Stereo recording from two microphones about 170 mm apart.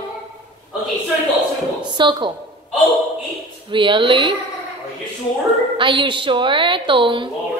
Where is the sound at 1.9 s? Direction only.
25° right (ahead or behind).